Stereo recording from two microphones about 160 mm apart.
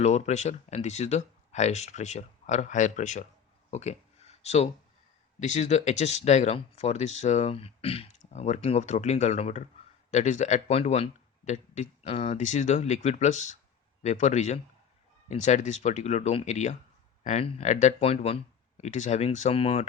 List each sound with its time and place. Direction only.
0.0 s speech: 45° left (ahead or behind)
3.7 s a sound: 45° left (ahead or behind)
5.4 s speech: 45° left (ahead or behind)
12.4 s speech: 50° left (ahead or behind)